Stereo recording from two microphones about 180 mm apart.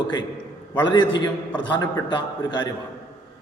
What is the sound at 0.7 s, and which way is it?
A man's voice, 25° left (ahead or behind).